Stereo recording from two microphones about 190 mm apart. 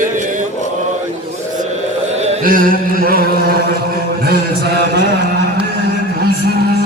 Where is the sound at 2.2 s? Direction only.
40° right (ahead or behind).